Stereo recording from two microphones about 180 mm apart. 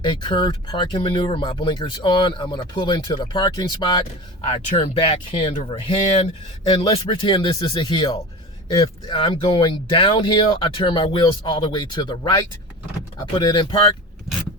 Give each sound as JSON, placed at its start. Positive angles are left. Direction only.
{"t": 0.0, "sound": "speech", "side_deg": 25}
{"t": 6.7, "sound": "speech", "side_deg": 30}